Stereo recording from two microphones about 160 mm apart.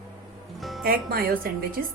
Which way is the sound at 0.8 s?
70° right (ahead or behind).